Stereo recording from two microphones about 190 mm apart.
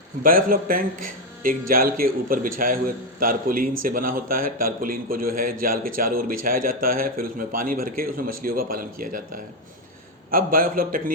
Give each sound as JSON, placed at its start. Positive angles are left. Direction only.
{"t": 0.2, "sound": "a man's voice", "side_deg": -50}